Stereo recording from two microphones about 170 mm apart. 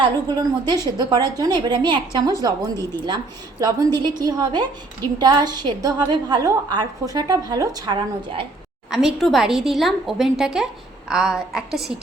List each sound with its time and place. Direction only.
0.0 s a woman's voice: 25° right (ahead or behind)
8.9 s a woman's voice: centre (ahead or behind)